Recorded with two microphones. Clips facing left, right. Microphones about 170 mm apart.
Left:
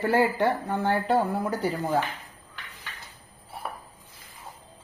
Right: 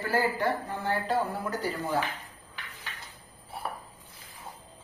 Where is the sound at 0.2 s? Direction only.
65° left (ahead or behind).